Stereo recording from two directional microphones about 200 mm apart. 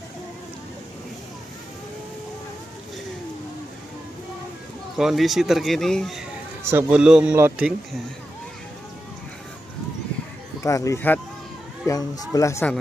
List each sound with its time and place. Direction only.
4.9 s speech: centre (ahead or behind)
6.6 s speech: 10° right (ahead or behind)
10.6 s speech: 15° left (ahead or behind)